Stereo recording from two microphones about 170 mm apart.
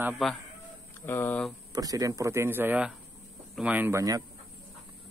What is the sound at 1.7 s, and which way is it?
A man's voice, 20° right (ahead or behind).